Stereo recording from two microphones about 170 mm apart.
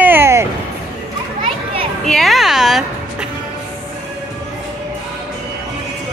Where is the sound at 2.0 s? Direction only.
Centre (ahead or behind).